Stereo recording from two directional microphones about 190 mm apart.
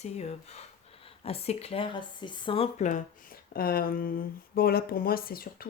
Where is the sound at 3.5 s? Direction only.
50° left (ahead or behind).